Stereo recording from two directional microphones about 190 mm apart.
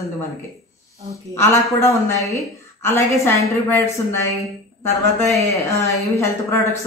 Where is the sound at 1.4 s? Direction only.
15° left (ahead or behind).